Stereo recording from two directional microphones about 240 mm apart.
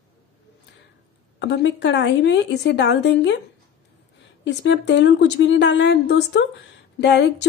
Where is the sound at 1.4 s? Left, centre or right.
Left.